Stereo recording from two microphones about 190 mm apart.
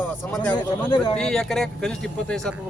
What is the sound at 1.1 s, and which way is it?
A man's voice, 5° left (ahead or behind).